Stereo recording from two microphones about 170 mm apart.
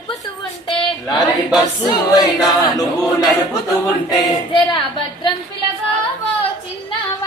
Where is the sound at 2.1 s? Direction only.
25° left (ahead or behind).